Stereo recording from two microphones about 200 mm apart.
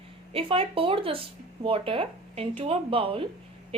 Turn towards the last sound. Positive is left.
turn(degrees=-25)  # may be behind; listen again after turning